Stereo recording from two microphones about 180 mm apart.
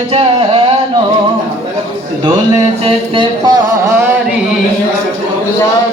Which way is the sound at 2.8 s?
25° right (ahead or behind).